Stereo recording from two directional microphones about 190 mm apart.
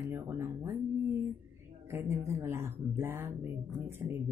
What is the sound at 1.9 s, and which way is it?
Speech, 15° right (ahead or behind).